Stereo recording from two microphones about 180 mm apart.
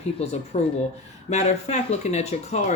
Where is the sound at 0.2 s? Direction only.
35° left (ahead or behind).